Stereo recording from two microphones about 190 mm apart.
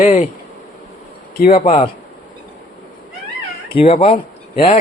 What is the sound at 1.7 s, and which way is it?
Speech, 35° left (ahead or behind).